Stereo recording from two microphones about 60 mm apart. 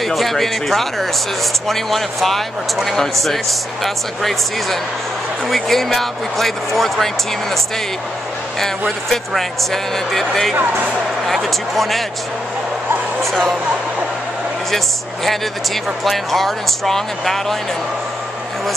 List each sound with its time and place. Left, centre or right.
0.0 s speech: centre
9.1 s speech: centre
10.5 s speech: right
11.2 s speech: centre
15.2 s speech: centre